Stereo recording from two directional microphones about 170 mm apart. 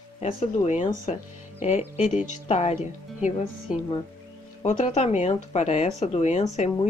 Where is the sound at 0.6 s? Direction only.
45° left (ahead or behind).